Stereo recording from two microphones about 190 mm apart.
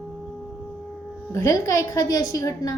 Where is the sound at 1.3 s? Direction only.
15° left (ahead or behind).